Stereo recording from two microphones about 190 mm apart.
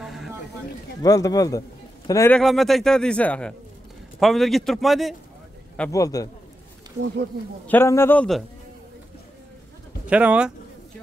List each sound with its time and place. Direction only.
0.0 s a sound: centre (ahead or behind)
1.0 s speech: 20° left (ahead or behind)
2.3 s a man's voice: centre (ahead or behind)
5.9 s a man's voice: 15° left (ahead or behind)
7.6 s a man's voice: 10° left (ahead or behind)
10.0 s speech: 5° right (ahead or behind)